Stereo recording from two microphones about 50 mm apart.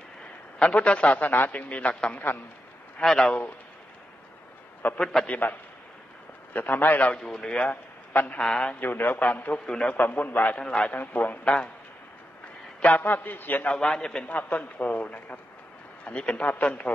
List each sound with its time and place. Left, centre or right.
0.6 s a man's voice: left
1.7 s a man's voice: left
3.0 s speech: centre
4.9 s speech: centre
5.4 s a man's voice: left
7.2 s speech: centre
7.7 s a sound: left
8.4 s a man's voice: centre
8.7 s a man's voice: left
10.6 s speech: centre
10.9 s a man's voice: left
12.8 s a man's voice: left
13.7 s speech: centre
14.2 s a man's voice: left